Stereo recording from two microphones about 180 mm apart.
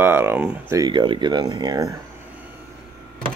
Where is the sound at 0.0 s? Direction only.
10° right (ahead or behind).